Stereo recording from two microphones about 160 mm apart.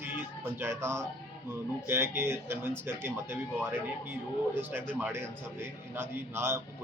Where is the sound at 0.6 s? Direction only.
15° right (ahead or behind).